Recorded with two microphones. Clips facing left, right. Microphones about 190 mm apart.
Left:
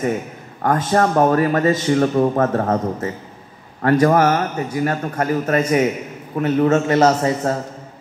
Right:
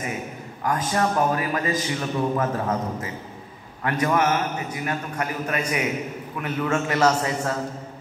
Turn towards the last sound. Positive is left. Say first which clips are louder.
# left 5 dB
turn(degrees=35)  # may be behind; listen again after turning